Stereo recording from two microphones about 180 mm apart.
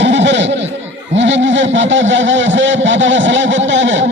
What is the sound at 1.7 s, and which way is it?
Speech, 90° right.